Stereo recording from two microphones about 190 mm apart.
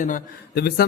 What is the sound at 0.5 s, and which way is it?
Speech, 55° left (ahead or behind).